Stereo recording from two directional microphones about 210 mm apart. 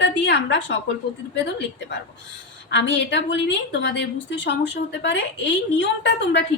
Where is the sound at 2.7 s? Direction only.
60° left (ahead or behind).